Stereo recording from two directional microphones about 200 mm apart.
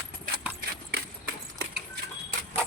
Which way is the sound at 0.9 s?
55° right (ahead or behind).